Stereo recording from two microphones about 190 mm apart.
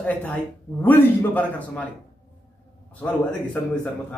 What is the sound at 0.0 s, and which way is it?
A man's voice, 10° left (ahead or behind).